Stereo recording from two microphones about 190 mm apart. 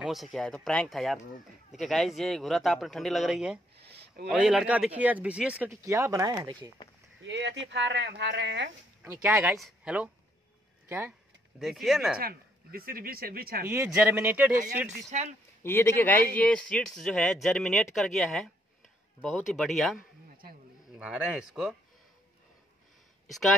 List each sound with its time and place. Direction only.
0.0 s speech: centre (ahead or behind)
3.7 s a sound: 60° right (ahead or behind)
4.3 s speech: centre (ahead or behind); by 6.5 s 15° right (ahead or behind)
7.2 s speech: 70° right (ahead or behind)
9.0 s speech: 10° right (ahead or behind)
12.2 s speech: 50° right (ahead or behind)
13.8 s speech: 5° right (ahead or behind)
15.0 s speech: 35° right (ahead or behind)
15.6 s speech: 15° left (ahead or behind)
21.0 s speech: 5° right (ahead or behind)